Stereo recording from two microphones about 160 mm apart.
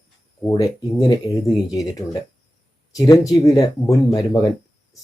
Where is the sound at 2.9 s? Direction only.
20° left (ahead or behind).